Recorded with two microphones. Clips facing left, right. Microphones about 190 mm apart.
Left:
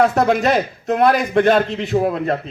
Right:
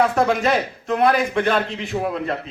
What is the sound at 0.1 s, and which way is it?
A man's voice, 45° left (ahead or behind).